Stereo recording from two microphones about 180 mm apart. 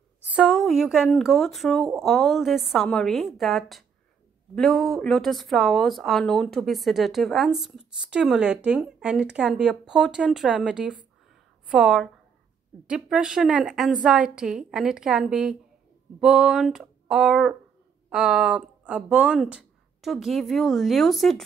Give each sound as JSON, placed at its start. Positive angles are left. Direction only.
{"t": 0.2, "sound": "speech", "side_deg": -5}